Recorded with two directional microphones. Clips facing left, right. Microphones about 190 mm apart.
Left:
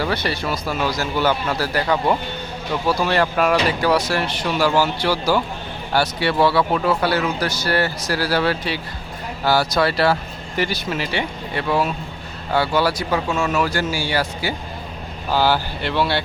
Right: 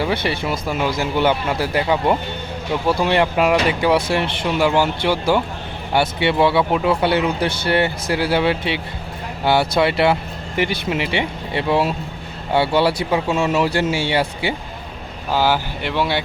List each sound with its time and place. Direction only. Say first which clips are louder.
0.0 s speech: right 2 dB; 20° right (ahead or behind)
2.8 s speech: right 2 dB; 20° right (ahead or behind)
15.3 s speech: even; 15° right (ahead or behind)